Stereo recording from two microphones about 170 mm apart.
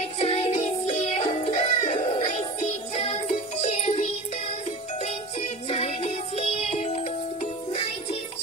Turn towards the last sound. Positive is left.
turn(degrees=40)  # may be behind; listen again after turning